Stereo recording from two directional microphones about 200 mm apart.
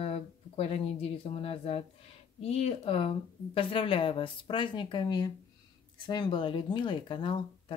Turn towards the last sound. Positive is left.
turn(degrees=25)  # may be behind; listen again after turning